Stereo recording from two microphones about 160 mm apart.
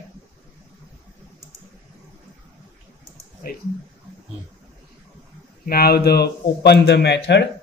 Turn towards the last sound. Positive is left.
turn(degrees=90)